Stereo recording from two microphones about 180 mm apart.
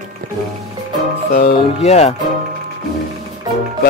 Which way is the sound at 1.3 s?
35° left (ahead or behind).